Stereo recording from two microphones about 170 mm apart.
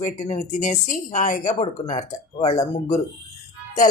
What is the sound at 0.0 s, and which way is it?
Speech, 45° left (ahead or behind).